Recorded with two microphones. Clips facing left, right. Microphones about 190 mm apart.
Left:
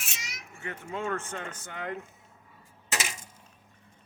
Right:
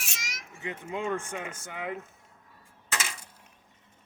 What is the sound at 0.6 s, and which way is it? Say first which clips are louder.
Speech: right 1 dB; 15° right (ahead or behind).